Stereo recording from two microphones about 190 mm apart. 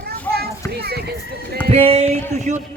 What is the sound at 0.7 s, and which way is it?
Speech, 55° right (ahead or behind).